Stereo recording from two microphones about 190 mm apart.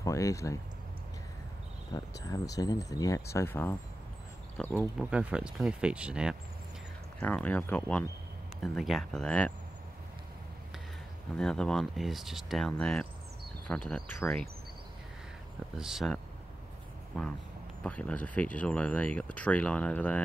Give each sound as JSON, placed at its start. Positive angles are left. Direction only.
{"t": 0.0, "sound": "speech", "side_deg": 15}
{"t": 2.0, "sound": "speech", "side_deg": 20}
{"t": 4.9, "sound": "speech", "side_deg": -5}
{"t": 7.2, "sound": "speech", "side_deg": 10}
{"t": 11.3, "sound": "speech", "side_deg": 5}
{"t": 15.8, "sound": "speech", "side_deg": 0}